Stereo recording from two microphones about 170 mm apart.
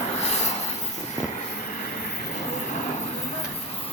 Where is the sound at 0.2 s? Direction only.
40° left (ahead or behind).